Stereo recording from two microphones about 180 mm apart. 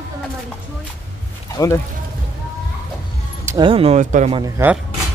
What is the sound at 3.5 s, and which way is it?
Speech, 25° right (ahead or behind).